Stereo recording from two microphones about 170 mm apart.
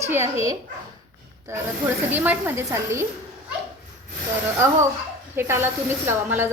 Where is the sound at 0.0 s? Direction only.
15° right (ahead or behind).